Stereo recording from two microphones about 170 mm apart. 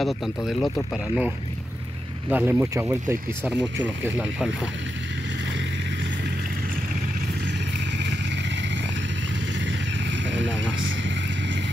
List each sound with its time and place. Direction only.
0.0 s speech: centre (ahead or behind)
2.2 s speech: 10° right (ahead or behind)
10.3 s vehicle: 90° right